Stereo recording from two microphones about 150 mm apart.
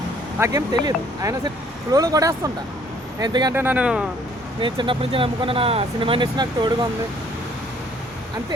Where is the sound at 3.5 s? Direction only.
10° right (ahead or behind).